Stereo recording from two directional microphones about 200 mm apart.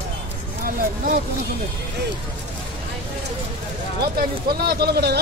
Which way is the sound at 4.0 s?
50° right (ahead or behind).